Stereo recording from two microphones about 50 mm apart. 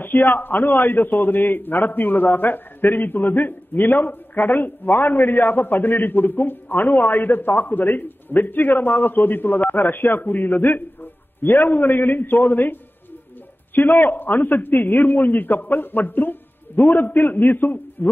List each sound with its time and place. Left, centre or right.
0.0 s a man's voice: left
13.7 s a man's voice: left